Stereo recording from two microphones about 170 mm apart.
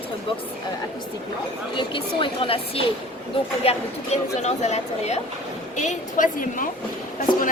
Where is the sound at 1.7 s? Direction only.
30° left (ahead or behind); by 6.7 s 50° left (ahead or behind).